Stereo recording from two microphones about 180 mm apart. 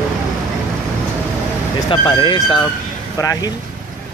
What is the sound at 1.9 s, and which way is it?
Speech, 25° left (ahead or behind).